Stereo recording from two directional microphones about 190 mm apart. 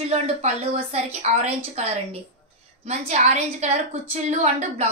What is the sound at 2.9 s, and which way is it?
A woman's voice, 35° right (ahead or behind).